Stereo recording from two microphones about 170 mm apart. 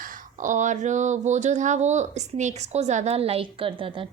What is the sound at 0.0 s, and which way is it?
Speech, 50° right (ahead or behind).